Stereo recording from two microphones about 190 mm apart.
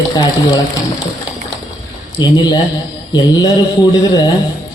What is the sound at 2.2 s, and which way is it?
A man's voice, 20° left (ahead or behind).